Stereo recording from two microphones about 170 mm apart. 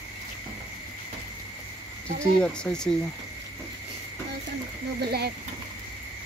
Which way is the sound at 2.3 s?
5° left (ahead or behind).